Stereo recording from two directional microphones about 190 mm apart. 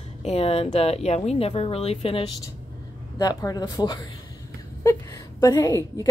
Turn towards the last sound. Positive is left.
turn(degrees=20)  # may be behind; listen again after turning